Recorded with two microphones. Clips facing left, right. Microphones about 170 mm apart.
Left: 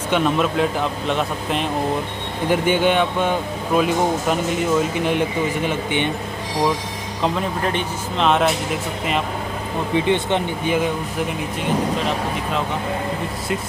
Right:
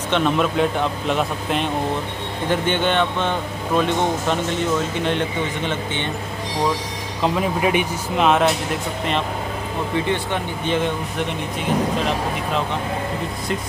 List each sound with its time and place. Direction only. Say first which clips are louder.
0.1 s speech: even; centre (ahead or behind)
7.3 s speech: right 3 dB; 10° right (ahead or behind)
9.9 s speech: left 4 dB; 20° left (ahead or behind)
10.6 s speech: left 1 dB; 5° left (ahead or behind)